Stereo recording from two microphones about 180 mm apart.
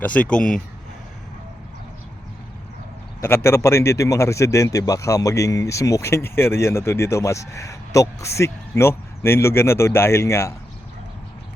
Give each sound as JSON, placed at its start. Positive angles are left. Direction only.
{"t": 0.0, "sound": "speech", "side_deg": 10}
{"t": 3.2, "sound": "speech", "side_deg": 15}